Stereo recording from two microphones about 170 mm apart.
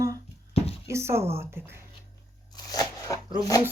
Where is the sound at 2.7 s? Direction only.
20° left (ahead or behind).